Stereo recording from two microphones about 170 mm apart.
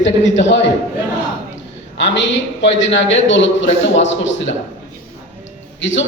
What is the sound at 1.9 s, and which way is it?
A man's voice, 90° left.